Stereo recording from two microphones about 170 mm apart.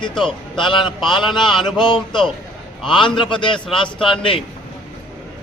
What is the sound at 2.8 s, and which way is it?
Speech, 30° left (ahead or behind).